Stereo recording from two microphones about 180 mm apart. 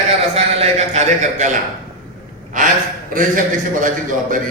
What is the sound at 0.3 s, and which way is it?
A man's voice, 40° right (ahead or behind).